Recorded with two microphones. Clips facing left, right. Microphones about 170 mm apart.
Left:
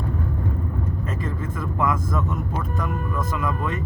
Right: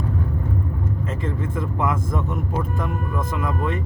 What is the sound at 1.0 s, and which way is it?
Speech, 25° right (ahead or behind).